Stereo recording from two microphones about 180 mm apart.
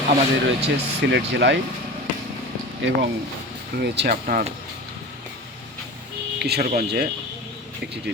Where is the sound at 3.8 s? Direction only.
65° right (ahead or behind).